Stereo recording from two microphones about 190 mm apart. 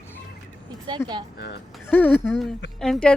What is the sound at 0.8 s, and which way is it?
Speech, 25° right (ahead or behind).